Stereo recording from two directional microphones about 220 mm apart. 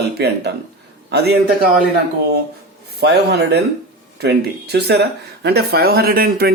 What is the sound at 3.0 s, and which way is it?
Speech, 45° right (ahead or behind).